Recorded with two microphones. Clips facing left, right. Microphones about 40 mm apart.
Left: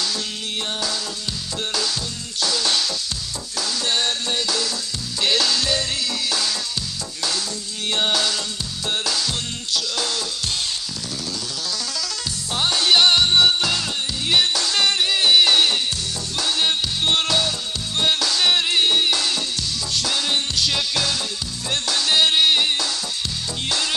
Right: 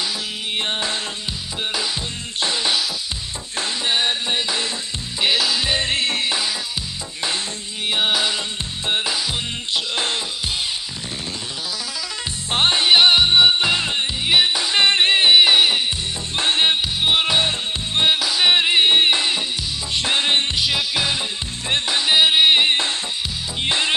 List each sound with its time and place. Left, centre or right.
0.6 s music: right
2.4 s music: right
3.8 s music: right
5.2 s music: centre; by 6.3 s right
7.9 s music: centre
12.4 s music: right
12.8 s music: right
16.3 s music: right
17.0 s music: centre
18.2 s music: centre
20.6 s music: centre